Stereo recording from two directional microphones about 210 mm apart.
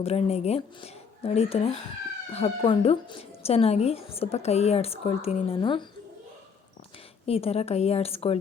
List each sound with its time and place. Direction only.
0.0 s speech: 30° left (ahead or behind)
7.3 s speech: 30° left (ahead or behind)